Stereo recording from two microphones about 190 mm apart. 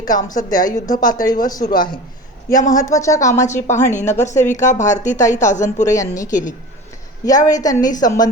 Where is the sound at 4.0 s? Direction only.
40° left (ahead or behind).